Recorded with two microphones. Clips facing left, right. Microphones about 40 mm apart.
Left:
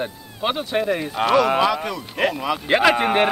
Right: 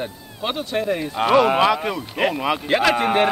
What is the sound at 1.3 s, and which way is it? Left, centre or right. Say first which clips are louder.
Speech: right 2 dB; centre.